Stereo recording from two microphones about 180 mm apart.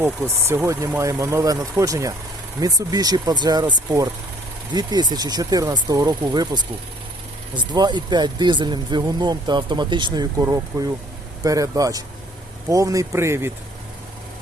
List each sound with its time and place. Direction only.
0.0 s speech: 15° right (ahead or behind)